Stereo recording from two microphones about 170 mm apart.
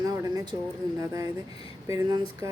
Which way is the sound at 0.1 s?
20° right (ahead or behind).